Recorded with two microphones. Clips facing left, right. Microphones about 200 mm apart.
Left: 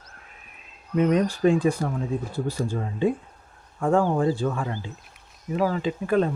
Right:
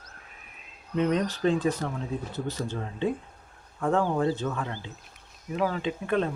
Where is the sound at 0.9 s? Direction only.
10° left (ahead or behind).